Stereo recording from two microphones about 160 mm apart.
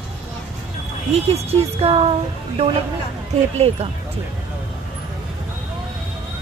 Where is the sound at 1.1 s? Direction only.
40° right (ahead or behind).